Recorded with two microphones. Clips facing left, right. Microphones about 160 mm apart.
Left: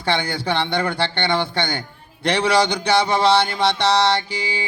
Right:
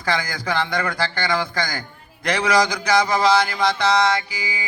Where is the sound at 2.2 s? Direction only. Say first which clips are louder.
Left 1 dB; 30° left (ahead or behind).